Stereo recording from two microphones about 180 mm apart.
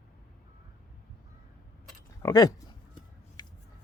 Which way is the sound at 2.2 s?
20° left (ahead or behind).